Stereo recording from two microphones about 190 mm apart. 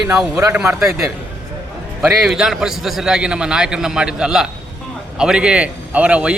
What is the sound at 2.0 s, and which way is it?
A man's voice, centre (ahead or behind).